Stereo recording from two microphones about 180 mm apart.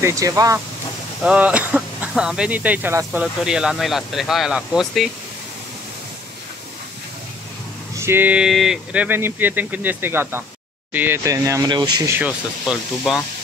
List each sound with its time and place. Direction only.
0.0 s speech: 15° right (ahead or behind)
1.2 s speech: 5° right (ahead or behind)
8.0 s speech: 10° right (ahead or behind)
12.2 s speech: 5° right (ahead or behind)